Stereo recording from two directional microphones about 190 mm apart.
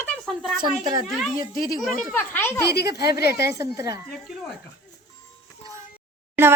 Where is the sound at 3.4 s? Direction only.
15° right (ahead or behind).